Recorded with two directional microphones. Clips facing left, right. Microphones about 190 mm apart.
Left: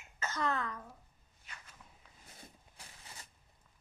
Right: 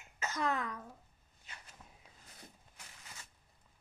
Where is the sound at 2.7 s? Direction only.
35° left (ahead or behind).